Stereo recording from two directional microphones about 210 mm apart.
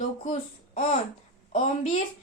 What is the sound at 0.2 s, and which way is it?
A child's voice, 35° left (ahead or behind).